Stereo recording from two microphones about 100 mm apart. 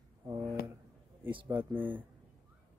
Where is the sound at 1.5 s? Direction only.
20° right (ahead or behind).